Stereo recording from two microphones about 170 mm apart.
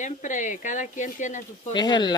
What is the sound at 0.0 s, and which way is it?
Speech, 45° left (ahead or behind).